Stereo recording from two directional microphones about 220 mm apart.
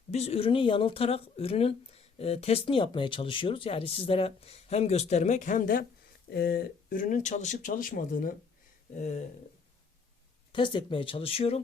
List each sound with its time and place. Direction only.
0.1 s speech: 25° left (ahead or behind)
10.5 s speech: 20° left (ahead or behind)